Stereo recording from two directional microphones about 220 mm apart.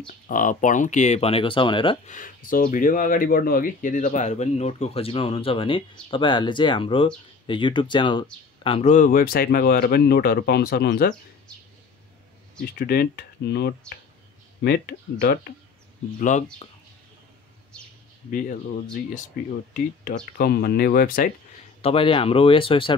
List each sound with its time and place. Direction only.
0.3 s speech: 35° left (ahead or behind)
2.0 s speech: 35° left (ahead or behind)
12.7 s speech: 45° left (ahead or behind)
16.2 s speech: 35° left (ahead or behind)
19.7 s speech: 40° left (ahead or behind)
21.8 s speech: 25° left (ahead or behind)